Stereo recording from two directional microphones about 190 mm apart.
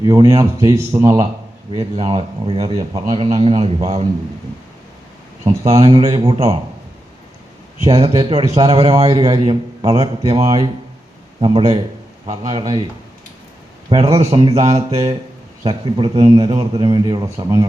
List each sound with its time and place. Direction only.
0.0 s a man's voice: 20° right (ahead or behind)
5.6 s a man's voice: 30° right (ahead or behind)
7.9 s a man's voice: 20° right (ahead or behind)
13.9 s a man's voice: 30° right (ahead or behind)